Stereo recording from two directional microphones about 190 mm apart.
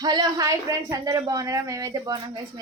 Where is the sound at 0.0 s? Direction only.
20° right (ahead or behind).